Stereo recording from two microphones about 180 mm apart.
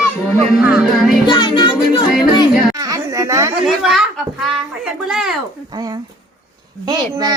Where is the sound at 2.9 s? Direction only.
20° right (ahead or behind).